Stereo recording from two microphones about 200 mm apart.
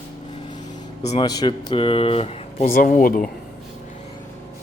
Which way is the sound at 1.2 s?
20° left (ahead or behind).